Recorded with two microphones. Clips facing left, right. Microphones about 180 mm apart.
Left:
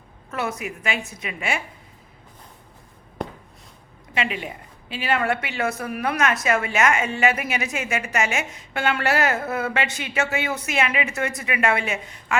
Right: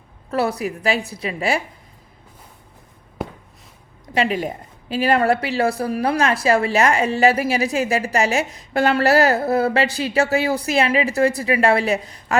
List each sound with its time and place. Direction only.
0.3 s a woman's voice: 35° right (ahead or behind)
3.2 s a sound: 5° right (ahead or behind)
4.1 s a woman's voice: 35° right (ahead or behind)